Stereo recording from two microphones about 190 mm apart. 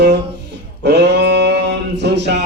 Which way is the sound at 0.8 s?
65° right (ahead or behind).